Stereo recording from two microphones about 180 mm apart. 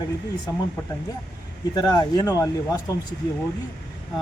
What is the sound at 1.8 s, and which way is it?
A man's voice, 20° left (ahead or behind).